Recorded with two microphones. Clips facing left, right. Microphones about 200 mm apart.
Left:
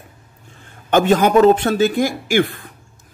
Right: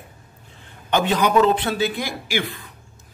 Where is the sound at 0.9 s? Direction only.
50° left (ahead or behind).